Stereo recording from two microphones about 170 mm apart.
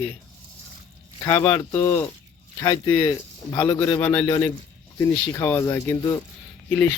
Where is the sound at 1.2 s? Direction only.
15° left (ahead or behind).